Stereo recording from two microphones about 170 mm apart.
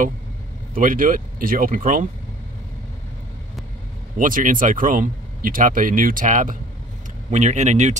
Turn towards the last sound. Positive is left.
turn(degrees=-45)  # may be behind; listen again after turning